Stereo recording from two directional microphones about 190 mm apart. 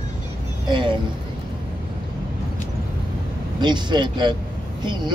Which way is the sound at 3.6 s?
25° right (ahead or behind).